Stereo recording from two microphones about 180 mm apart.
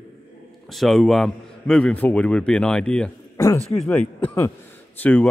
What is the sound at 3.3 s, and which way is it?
A man's voice, 15° left (ahead or behind).